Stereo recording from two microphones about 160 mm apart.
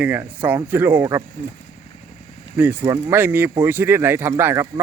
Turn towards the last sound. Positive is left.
turn(degrees=-15)  # may be behind; listen again after turning